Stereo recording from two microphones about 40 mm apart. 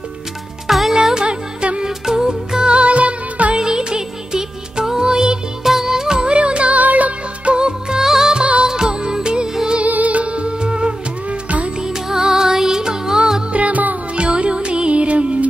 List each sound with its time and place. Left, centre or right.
0.7 s music: centre
1.1 s music: right
1.9 s music: centre
2.7 s music: right
3.5 s music: centre
5.6 s music: centre; by 6.8 s right
6.8 s music: right
8.0 s music: centre
9.8 s music: right
11.2 s music: right
11.8 s music: centre
13.5 s music: right
14.1 s music: right